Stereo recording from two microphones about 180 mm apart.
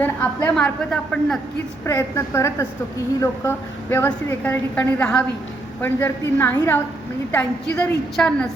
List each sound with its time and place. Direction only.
0.0 s a woman's voice: 10° left (ahead or behind)
1.8 s a woman's voice: 15° left (ahead or behind)